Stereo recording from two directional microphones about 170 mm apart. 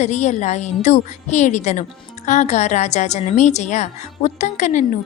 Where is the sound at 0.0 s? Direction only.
40° left (ahead or behind).